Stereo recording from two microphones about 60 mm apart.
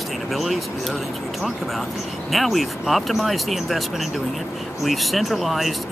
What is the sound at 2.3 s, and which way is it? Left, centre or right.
Speech, centre.